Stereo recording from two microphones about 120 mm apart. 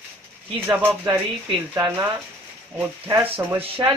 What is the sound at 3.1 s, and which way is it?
Speech, 15° right (ahead or behind).